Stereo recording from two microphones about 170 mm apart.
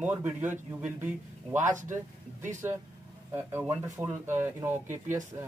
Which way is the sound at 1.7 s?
50° right (ahead or behind).